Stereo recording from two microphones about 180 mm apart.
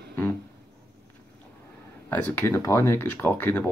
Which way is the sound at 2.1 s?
10° left (ahead or behind).